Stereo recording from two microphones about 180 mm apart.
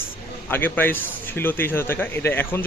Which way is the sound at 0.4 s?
10° left (ahead or behind).